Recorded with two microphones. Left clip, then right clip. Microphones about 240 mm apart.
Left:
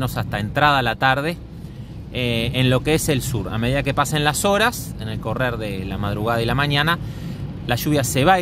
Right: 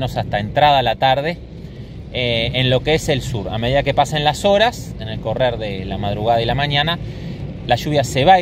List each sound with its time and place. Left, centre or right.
0.0 s speech: left